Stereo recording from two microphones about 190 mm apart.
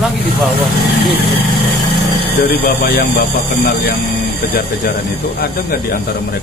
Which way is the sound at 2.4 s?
50° left (ahead or behind).